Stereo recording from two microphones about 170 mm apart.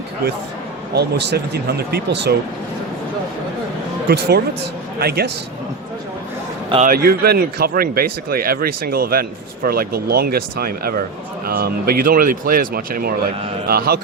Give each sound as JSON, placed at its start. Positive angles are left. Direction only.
{"t": 0.9, "sound": "speech", "side_deg": -80}
{"t": 4.1, "sound": "speech", "side_deg": -70}
{"t": 6.8, "sound": "speech", "side_deg": -60}